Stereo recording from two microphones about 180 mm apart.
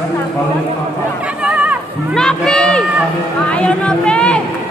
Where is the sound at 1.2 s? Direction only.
5° right (ahead or behind).